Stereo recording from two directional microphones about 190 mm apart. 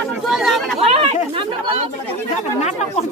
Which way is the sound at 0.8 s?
30° right (ahead or behind).